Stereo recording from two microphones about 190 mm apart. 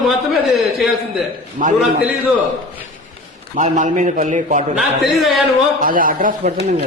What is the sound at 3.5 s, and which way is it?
A man's voice, 40° right (ahead or behind).